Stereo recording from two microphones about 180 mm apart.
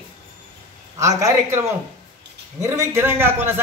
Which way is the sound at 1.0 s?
20° right (ahead or behind).